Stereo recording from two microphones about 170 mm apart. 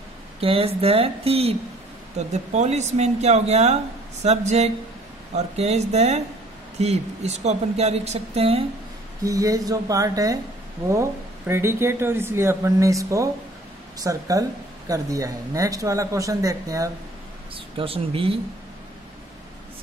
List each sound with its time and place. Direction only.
0.4 s speech: 35° right (ahead or behind)
9.2 s speech: 20° right (ahead or behind)
17.7 s speech: 35° right (ahead or behind)